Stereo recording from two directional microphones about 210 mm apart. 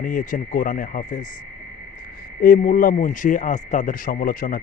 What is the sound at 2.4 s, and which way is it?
Speech, 40° left (ahead or behind).